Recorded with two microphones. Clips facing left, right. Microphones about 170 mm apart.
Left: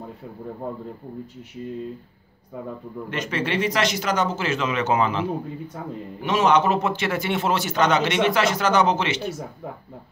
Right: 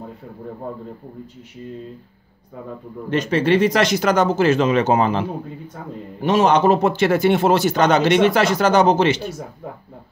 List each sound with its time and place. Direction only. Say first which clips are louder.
3.1 s a man's voice: right 9 dB; 35° right (ahead or behind)
6.2 s a man's voice: right 4 dB; 35° right (ahead or behind)